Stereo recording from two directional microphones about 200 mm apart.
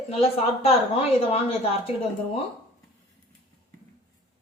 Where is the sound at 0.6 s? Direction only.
30° left (ahead or behind).